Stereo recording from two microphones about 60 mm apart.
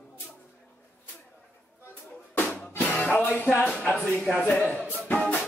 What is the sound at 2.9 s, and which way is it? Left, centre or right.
Music, left.